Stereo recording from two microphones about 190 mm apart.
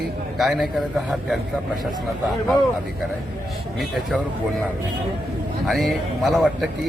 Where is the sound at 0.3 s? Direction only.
Centre (ahead or behind).